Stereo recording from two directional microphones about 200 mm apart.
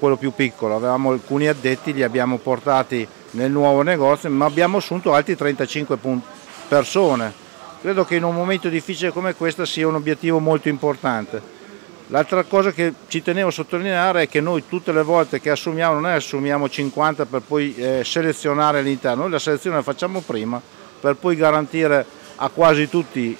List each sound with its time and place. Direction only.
0.0 s speech: 15° right (ahead or behind)